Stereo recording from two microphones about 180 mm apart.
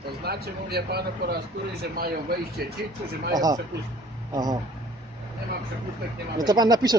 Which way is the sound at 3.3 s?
20° right (ahead or behind).